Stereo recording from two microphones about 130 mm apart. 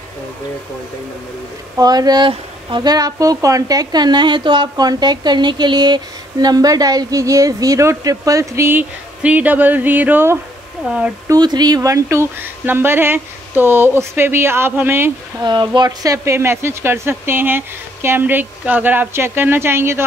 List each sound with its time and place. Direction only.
1.8 s speech: 30° right (ahead or behind)
11.2 s speech: 30° right (ahead or behind)
15.4 s speech: 35° right (ahead or behind); by 20.0 s 20° right (ahead or behind)